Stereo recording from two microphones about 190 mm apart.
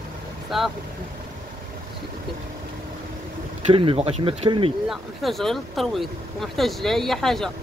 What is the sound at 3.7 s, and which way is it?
Speech, 30° right (ahead or behind).